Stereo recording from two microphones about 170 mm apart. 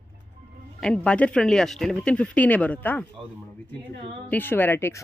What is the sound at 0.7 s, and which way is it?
Speech, 5° left (ahead or behind).